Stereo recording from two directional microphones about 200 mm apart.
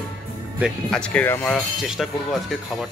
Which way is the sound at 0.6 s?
5° left (ahead or behind).